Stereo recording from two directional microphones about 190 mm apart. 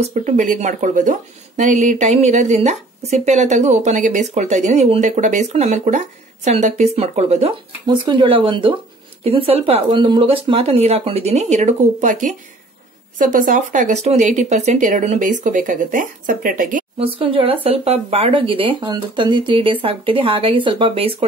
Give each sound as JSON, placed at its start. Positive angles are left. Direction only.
{"t": 0.0, "sound": "a woman's voice", "side_deg": -40}
{"t": 7.8, "sound": "a woman's voice", "side_deg": -25}
{"t": 17.0, "sound": "speech", "side_deg": -30}